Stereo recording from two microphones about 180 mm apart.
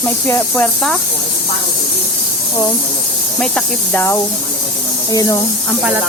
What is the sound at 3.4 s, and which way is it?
Speech, 5° left (ahead or behind).